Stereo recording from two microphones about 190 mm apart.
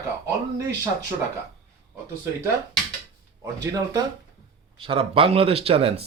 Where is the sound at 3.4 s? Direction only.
20° right (ahead or behind).